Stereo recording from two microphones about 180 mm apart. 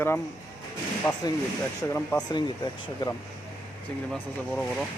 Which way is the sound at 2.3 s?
25° left (ahead or behind).